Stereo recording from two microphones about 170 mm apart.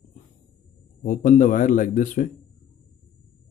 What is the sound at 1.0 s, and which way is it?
A man's voice, 50° left (ahead or behind).